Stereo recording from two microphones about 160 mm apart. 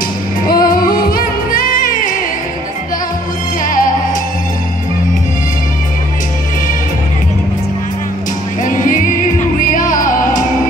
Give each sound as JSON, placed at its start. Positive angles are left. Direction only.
{"t": 0.5, "sound": "music", "side_deg": 65}
{"t": 3.6, "sound": "music", "side_deg": 60}
{"t": 8.6, "sound": "music", "side_deg": 55}